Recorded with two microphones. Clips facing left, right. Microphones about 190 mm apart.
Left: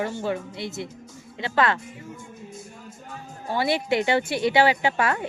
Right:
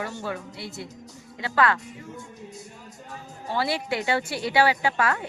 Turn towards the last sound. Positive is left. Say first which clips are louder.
# left 2 dB
turn(degrees=20)  # may be behind; listen again after turning